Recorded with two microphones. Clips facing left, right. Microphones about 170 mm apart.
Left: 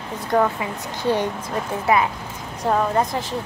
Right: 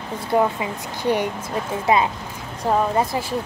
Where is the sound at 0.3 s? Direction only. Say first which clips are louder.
Even; 15° right (ahead or behind).